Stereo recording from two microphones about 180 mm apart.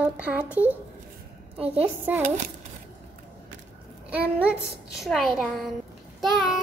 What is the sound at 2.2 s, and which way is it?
Speech, 40° right (ahead or behind).